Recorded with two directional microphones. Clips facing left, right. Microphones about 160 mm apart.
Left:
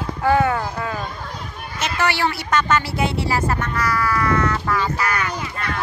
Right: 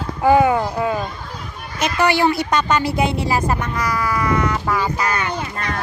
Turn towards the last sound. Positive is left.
turn(degrees=-25)  # may be behind; listen again after turning